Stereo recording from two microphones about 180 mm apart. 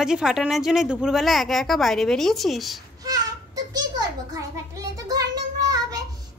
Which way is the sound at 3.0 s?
20° right (ahead or behind).